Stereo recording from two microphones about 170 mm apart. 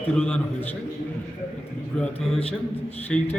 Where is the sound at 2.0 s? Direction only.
5° left (ahead or behind).